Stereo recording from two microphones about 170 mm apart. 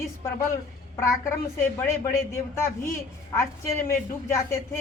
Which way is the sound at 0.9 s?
15° left (ahead or behind).